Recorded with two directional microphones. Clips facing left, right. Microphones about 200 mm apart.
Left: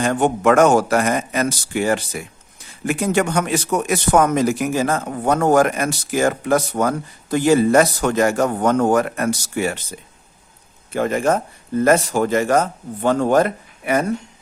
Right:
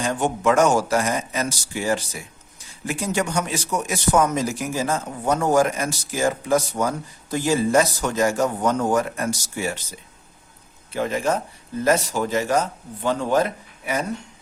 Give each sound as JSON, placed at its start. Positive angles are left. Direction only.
{"t": 0.0, "sound": "speech", "side_deg": 60}
{"t": 10.9, "sound": "speech", "side_deg": 50}